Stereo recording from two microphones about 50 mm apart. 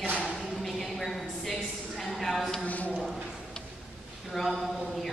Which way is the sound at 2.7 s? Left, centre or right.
Left.